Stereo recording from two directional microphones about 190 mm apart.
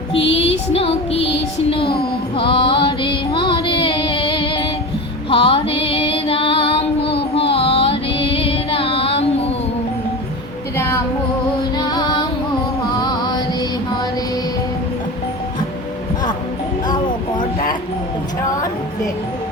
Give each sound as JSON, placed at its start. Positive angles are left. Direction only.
{"t": 0.1, "sound": "music", "side_deg": 30}
{"t": 5.3, "sound": "female singing", "side_deg": 30}
{"t": 7.5, "sound": "music", "side_deg": 30}
{"t": 10.8, "sound": "music", "side_deg": 15}
{"t": 11.8, "sound": "female singing", "side_deg": 20}
{"t": 13.0, "sound": "music", "side_deg": 20}